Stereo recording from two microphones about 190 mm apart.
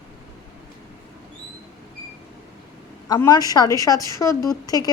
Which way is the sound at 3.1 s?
20° left (ahead or behind).